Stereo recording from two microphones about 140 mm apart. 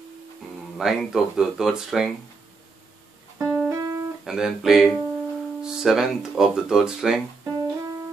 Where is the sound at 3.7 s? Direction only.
25° right (ahead or behind).